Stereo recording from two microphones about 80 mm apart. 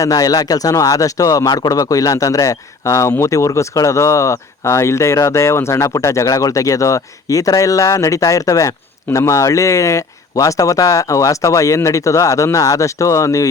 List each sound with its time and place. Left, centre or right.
0.0 s speech: left